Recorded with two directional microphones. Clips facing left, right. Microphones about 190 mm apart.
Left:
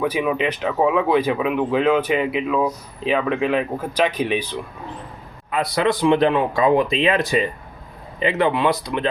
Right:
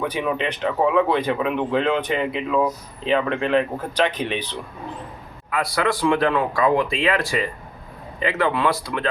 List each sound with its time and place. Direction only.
0.0 s speech: 10° left (ahead or behind)
5.5 s speech: 20° left (ahead or behind)